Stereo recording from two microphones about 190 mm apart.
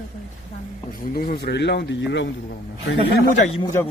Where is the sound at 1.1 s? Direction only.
55° left (ahead or behind); by 2.3 s 70° left (ahead or behind).